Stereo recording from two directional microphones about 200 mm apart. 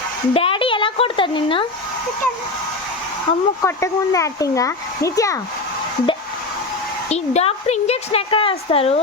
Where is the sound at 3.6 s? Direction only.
15° left (ahead or behind).